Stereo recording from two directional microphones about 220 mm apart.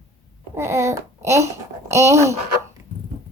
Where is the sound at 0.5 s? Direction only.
10° right (ahead or behind).